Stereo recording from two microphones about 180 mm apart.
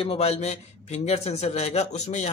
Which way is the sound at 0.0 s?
35° left (ahead or behind).